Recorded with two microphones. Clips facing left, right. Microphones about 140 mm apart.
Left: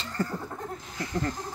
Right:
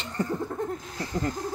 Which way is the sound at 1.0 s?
30° right (ahead or behind).